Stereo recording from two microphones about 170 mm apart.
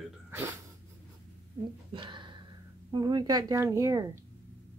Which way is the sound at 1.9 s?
30° right (ahead or behind).